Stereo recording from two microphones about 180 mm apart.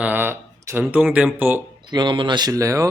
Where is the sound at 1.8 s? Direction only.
25° right (ahead or behind).